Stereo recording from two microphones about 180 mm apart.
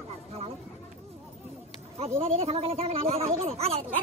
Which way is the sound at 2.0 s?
35° right (ahead or behind).